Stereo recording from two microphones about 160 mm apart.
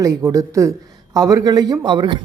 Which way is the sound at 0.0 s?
20° right (ahead or behind).